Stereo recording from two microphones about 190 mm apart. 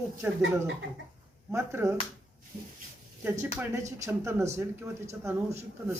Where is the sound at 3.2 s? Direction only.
15° right (ahead or behind).